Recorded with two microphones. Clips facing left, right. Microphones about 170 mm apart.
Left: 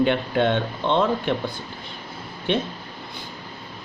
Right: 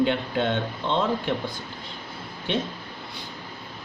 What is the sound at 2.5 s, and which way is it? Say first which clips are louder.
Speech: left 4 dB; 60° left (ahead or behind).